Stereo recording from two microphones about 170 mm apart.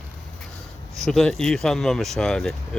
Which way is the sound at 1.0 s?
Centre (ahead or behind).